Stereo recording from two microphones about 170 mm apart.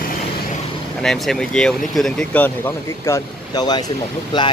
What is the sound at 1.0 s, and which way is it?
Speech, 5° left (ahead or behind).